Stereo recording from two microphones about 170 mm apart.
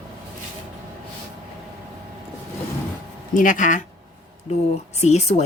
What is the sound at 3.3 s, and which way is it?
Speech, 50° left (ahead or behind).